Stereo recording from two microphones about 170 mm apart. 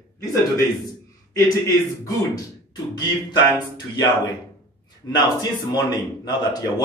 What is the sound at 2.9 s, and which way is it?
Speech, 25° left (ahead or behind).